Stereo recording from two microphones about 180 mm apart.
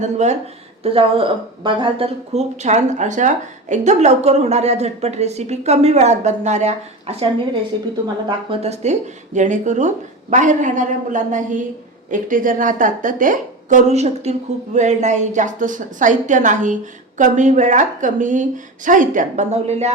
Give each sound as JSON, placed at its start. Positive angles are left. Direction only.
{"t": 0.0, "sound": "a woman's voice", "side_deg": -40}